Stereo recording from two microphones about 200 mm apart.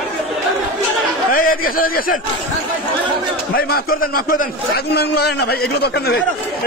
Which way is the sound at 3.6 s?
50° left (ahead or behind).